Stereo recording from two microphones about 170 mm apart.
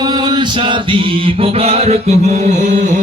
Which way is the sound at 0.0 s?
25° right (ahead or behind).